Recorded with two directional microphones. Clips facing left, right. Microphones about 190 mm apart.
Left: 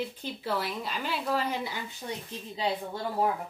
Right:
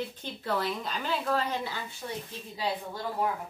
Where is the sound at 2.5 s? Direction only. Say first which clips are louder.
Left 2 dB; 25° left (ahead or behind).